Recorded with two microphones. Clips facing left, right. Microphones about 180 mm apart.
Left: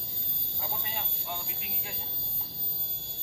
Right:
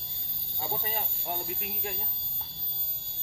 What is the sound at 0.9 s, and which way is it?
Speech, 45° right (ahead or behind).